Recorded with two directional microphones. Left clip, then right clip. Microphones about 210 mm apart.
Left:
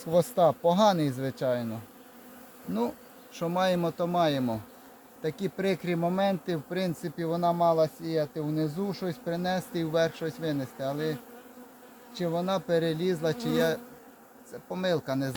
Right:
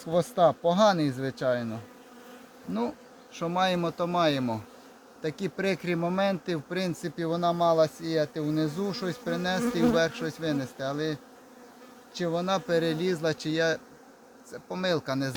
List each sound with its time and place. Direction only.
0.0 s speech: 20° left (ahead or behind)
3.3 s speech: 10° left (ahead or behind)